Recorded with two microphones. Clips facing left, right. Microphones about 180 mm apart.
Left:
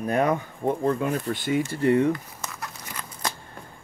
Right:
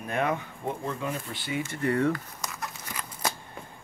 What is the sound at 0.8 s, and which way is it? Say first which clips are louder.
Speech: left 8 dB; 55° left (ahead or behind).